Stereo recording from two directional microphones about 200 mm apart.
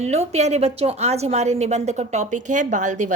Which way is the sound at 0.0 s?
35° right (ahead or behind).